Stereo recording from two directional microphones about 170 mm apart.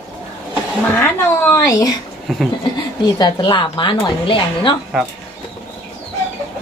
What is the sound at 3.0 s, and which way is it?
A woman's voice, 25° left (ahead or behind).